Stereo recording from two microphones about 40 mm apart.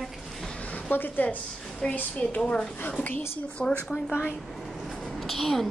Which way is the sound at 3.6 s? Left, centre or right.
Centre.